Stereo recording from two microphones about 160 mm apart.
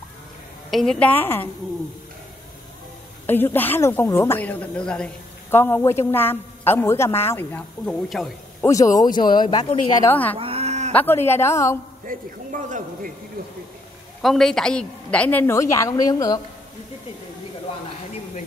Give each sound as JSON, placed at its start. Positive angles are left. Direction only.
{"t": 0.7, "sound": "a woman's voice", "side_deg": 0}
{"t": 3.3, "sound": "a woman's voice", "side_deg": 10}
{"t": 8.6, "sound": "speech", "side_deg": 20}
{"t": 9.9, "sound": "a woman's voice", "side_deg": 15}
{"t": 10.3, "sound": "a sound", "side_deg": -40}
{"t": 10.9, "sound": "a woman's voice", "side_deg": 10}
{"t": 12.1, "sound": "a man's voice", "side_deg": -55}
{"t": 14.2, "sound": "a woman's voice", "side_deg": 0}